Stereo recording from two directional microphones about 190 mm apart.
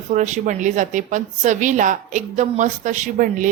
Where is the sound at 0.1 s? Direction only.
40° right (ahead or behind).